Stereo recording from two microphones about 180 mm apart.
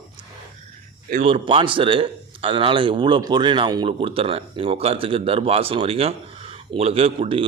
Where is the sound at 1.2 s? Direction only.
30° right (ahead or behind).